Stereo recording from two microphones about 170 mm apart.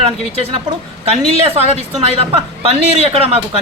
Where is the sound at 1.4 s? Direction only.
35° right (ahead or behind).